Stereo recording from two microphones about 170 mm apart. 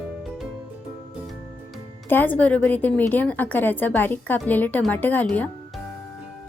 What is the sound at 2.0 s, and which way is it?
A woman's voice, 10° left (ahead or behind).